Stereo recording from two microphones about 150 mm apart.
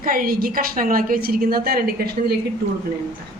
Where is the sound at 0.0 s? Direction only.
70° right (ahead or behind); by 2.3 s 90° right.